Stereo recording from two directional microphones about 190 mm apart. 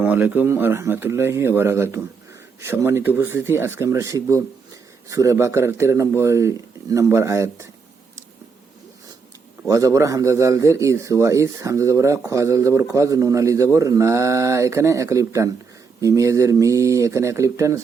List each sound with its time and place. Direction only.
0.0 s speech: 10° right (ahead or behind)
9.6 s speech: 15° right (ahead or behind)